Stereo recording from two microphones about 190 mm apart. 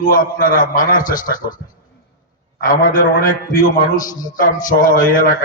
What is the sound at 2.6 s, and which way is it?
Speech, 45° left (ahead or behind).